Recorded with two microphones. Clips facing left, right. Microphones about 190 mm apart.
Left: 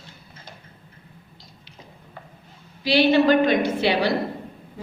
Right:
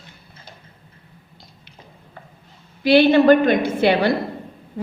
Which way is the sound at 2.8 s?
55° right (ahead or behind).